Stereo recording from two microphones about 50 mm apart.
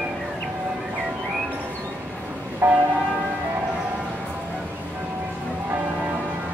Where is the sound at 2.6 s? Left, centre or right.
Right.